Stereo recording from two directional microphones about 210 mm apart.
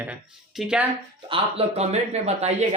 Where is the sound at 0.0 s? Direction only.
5° right (ahead or behind).